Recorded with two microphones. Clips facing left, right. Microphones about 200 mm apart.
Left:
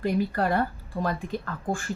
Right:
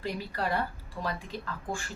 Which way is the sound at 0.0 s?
55° left (ahead or behind).